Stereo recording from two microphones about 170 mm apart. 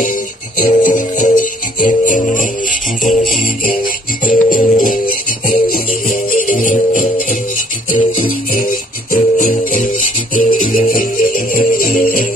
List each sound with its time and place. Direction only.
0.6 s music: 50° left (ahead or behind)